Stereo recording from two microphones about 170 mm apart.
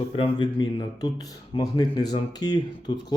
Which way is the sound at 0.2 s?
30° left (ahead or behind).